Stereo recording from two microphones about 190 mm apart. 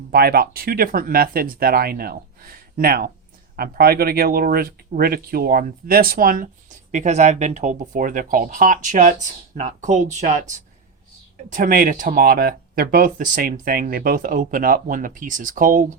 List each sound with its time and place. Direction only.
0.1 s speech: 55° right (ahead or behind)